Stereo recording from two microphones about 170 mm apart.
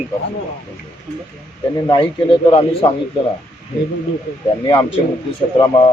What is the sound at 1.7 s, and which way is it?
Speech, 30° left (ahead or behind).